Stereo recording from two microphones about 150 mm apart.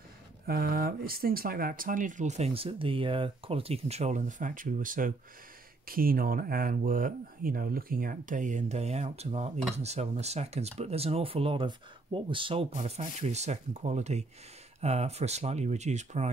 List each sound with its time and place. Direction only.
0.5 s speech: 75° right (ahead or behind)
5.9 s speech: 75° right (ahead or behind); by 16.3 s 50° right (ahead or behind)